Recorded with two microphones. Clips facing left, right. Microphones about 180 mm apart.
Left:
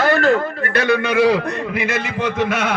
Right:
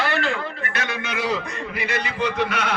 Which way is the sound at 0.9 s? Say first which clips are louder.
Left 12 dB; 65° left (ahead or behind).